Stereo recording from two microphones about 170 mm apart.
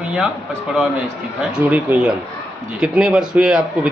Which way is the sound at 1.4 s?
10° right (ahead or behind).